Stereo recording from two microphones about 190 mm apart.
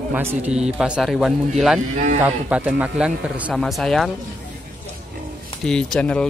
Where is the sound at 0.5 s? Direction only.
35° right (ahead or behind).